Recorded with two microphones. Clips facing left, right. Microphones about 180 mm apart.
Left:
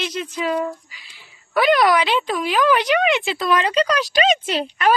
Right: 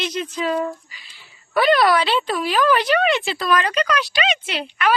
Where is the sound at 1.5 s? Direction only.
10° left (ahead or behind); by 5.0 s 40° left (ahead or behind).